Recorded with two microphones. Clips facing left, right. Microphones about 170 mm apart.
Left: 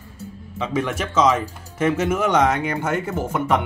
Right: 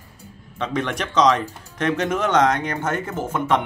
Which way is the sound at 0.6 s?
5° left (ahead or behind).